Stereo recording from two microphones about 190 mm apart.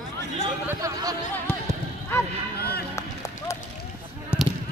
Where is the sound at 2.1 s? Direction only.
15° left (ahead or behind).